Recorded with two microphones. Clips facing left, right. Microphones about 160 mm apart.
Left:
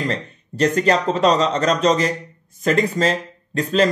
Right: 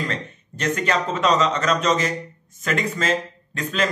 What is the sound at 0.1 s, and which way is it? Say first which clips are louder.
Speech: left 4 dB; 35° left (ahead or behind).